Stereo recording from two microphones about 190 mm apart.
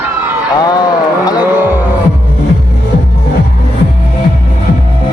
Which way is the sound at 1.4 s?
10° right (ahead or behind).